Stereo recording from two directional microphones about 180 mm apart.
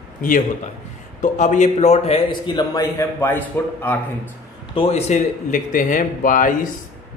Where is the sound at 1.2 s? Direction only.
45° left (ahead or behind).